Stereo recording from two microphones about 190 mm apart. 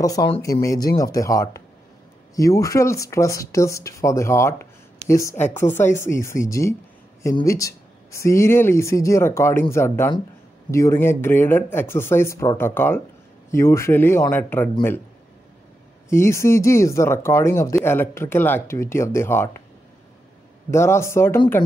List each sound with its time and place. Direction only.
0.0 s speech: 20° left (ahead or behind)
16.1 s speech: 15° left (ahead or behind)
20.7 s speech: 15° left (ahead or behind)